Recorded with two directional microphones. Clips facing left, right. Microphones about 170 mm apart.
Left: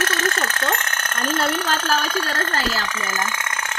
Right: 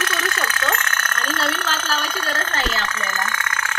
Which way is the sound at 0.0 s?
40° left (ahead or behind).